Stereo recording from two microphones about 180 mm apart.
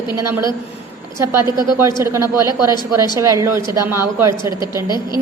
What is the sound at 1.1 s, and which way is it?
A woman's voice, 15° right (ahead or behind).